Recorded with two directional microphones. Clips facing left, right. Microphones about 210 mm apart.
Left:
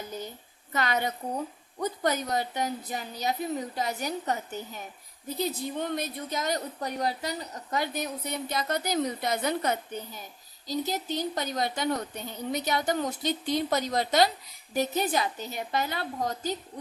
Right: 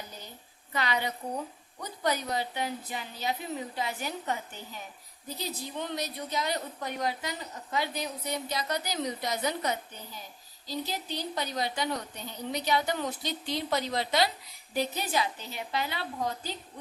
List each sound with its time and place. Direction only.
0.7 s a woman's voice: 45° left (ahead or behind)
5.4 s a woman's voice: 55° left (ahead or behind)